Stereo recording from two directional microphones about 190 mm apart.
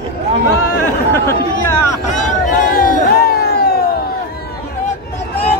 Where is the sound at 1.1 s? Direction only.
15° left (ahead or behind).